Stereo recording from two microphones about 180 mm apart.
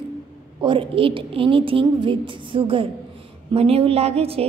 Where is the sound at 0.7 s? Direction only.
30° right (ahead or behind).